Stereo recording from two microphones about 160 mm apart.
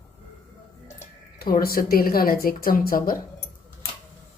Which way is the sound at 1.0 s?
65° left (ahead or behind).